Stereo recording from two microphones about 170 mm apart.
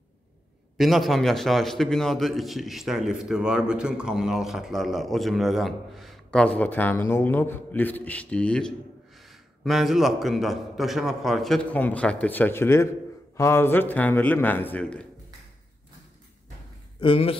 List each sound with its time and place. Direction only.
0.7 s a man's voice: centre (ahead or behind)
17.0 s speech: 35° left (ahead or behind)